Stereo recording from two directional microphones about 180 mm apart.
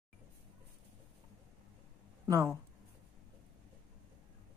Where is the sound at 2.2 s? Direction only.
20° right (ahead or behind).